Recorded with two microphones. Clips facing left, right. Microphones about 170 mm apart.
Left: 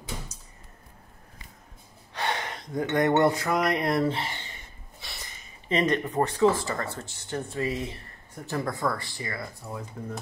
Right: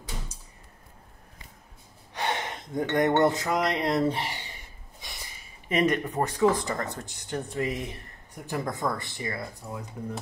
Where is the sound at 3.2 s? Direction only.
20° right (ahead or behind).